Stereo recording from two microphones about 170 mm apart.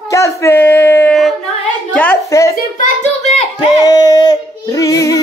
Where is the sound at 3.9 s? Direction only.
20° left (ahead or behind).